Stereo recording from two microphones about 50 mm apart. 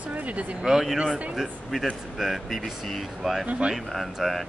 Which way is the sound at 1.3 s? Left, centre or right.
Centre.